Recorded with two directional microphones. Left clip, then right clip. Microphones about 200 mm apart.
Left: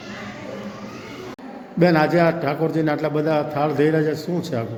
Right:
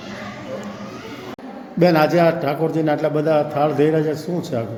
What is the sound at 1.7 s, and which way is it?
A man's voice, centre (ahead or behind).